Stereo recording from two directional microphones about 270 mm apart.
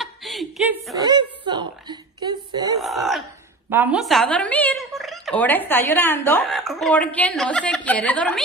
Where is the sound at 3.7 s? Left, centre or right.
Centre.